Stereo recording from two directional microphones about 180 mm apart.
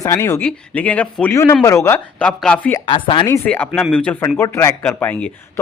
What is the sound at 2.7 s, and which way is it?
A man's voice, 25° left (ahead or behind).